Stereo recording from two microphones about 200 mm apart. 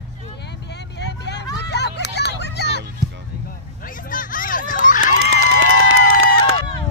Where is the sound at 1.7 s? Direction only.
55° left (ahead or behind).